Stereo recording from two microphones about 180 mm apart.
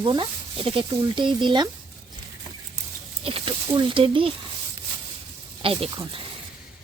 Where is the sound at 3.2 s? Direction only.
30° right (ahead or behind).